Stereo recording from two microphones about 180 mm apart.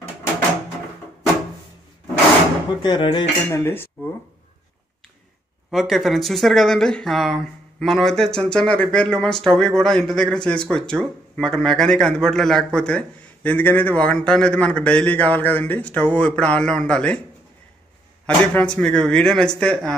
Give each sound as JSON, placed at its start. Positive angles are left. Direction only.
{"t": 2.8, "sound": "speech", "side_deg": 25}
{"t": 3.6, "sound": "speech", "side_deg": 10}
{"t": 5.7, "sound": "a man's voice", "side_deg": 0}
{"t": 18.2, "sound": "a man's voice", "side_deg": 5}